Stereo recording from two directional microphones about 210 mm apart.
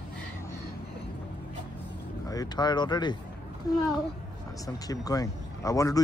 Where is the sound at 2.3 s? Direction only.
20° left (ahead or behind).